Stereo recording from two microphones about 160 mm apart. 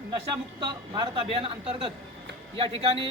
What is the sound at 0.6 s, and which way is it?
Speech, 30° right (ahead or behind).